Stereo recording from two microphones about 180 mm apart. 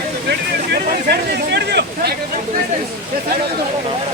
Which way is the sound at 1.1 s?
65° right (ahead or behind).